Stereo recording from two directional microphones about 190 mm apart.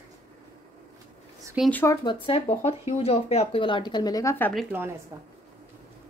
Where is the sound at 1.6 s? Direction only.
10° left (ahead or behind).